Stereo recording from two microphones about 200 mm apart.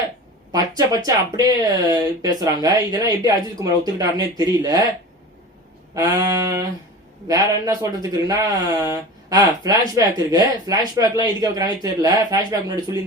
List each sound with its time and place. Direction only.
0.5 s speech: 20° right (ahead or behind)
5.9 s speech: 15° right (ahead or behind)